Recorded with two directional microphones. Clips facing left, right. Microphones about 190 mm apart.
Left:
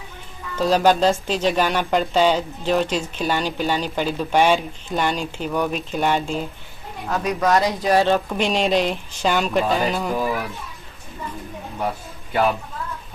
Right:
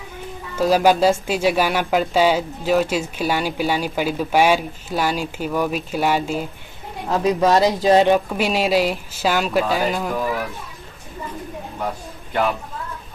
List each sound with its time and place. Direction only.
0.6 s speech: 10° right (ahead or behind)
7.1 s speech: 30° right (ahead or behind)
8.3 s speech: 5° right (ahead or behind)